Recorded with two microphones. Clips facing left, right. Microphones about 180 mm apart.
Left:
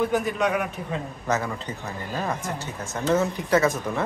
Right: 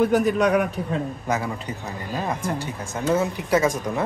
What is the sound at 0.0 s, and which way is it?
Speech, 40° right (ahead or behind).